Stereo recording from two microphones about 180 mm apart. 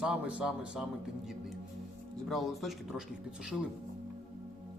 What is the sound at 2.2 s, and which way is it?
Speech, centre (ahead or behind).